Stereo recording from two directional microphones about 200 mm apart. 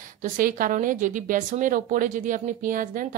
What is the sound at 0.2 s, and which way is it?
Speech, 45° right (ahead or behind).